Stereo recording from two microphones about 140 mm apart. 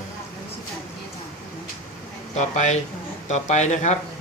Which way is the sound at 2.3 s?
55° left (ahead or behind).